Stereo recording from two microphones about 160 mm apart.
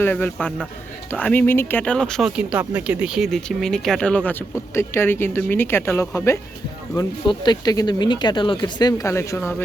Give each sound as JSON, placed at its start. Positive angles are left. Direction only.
{"t": 0.0, "sound": "speech", "side_deg": 10}